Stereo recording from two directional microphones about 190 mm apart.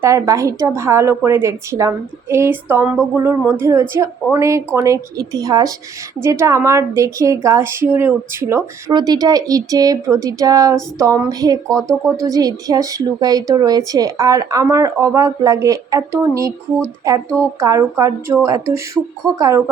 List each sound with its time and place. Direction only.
0.0 s a woman's voice: 15° right (ahead or behind)
11.9 s speech: 5° left (ahead or behind)
12.2 s a woman's voice: 20° right (ahead or behind)